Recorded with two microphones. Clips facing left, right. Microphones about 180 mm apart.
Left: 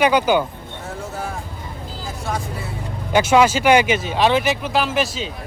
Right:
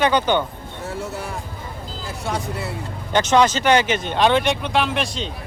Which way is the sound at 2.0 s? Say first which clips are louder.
Right 1 dB; 65° right (ahead or behind).